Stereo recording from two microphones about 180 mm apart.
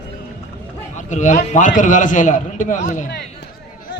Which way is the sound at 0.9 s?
40° left (ahead or behind).